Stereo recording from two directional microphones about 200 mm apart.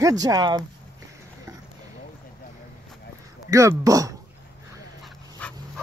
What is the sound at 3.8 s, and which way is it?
Speech, 15° right (ahead or behind).